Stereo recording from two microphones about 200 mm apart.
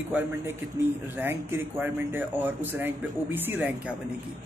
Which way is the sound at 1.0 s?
10° right (ahead or behind).